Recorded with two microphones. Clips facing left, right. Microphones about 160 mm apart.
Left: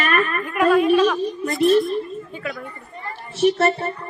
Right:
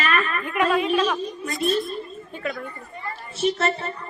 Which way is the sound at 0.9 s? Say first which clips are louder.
Left 6 dB; centre (ahead or behind).